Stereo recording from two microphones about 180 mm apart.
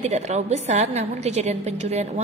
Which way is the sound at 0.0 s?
40° right (ahead or behind).